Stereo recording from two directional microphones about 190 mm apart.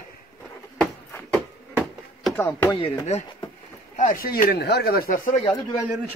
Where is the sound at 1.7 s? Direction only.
Centre (ahead or behind).